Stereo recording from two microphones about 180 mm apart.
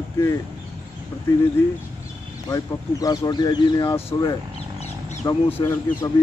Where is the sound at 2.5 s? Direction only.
20° left (ahead or behind).